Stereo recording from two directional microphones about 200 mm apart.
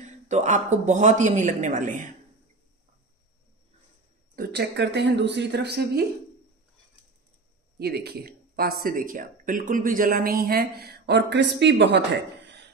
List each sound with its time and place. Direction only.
0.0 s a man's voice: 35° right (ahead or behind)
4.4 s speech: 55° right (ahead or behind)
7.8 s speech: 55° right (ahead or behind)